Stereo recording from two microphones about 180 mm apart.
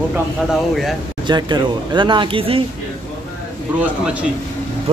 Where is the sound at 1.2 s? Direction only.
25° right (ahead or behind).